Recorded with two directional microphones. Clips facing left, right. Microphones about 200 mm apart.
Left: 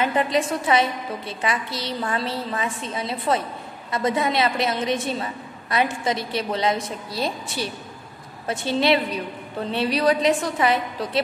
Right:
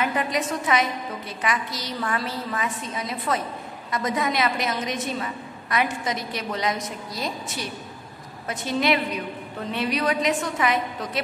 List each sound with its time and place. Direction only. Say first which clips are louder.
0.0 s a woman's voice: left 4 dB; 30° left (ahead or behind)